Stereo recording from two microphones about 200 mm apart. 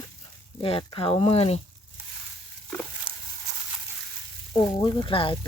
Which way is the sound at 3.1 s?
25° right (ahead or behind).